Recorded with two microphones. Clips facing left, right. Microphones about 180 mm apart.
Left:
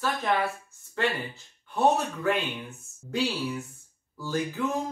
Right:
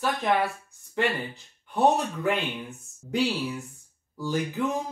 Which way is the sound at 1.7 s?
15° right (ahead or behind).